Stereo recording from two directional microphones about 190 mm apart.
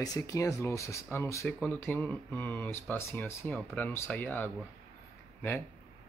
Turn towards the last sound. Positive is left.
turn(degrees=10)  # may be behind; listen again after turning